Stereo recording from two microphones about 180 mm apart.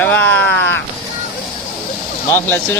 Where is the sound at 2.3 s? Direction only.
10° left (ahead or behind).